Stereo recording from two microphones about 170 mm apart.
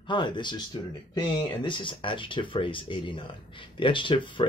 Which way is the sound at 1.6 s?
30° left (ahead or behind).